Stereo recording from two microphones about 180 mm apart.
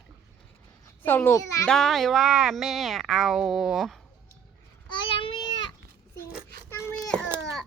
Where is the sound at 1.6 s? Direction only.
5° left (ahead or behind).